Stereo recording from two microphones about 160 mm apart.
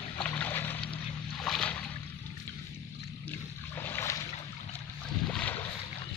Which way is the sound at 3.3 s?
15° left (ahead or behind).